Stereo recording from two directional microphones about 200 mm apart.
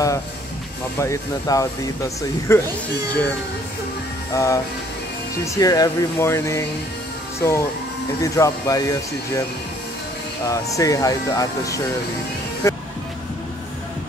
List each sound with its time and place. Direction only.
0.9 s speech: 15° left (ahead or behind)
4.3 s speech: 15° left (ahead or behind)
10.5 s speech: 15° left (ahead or behind)
12.6 s music: 15° left (ahead or behind)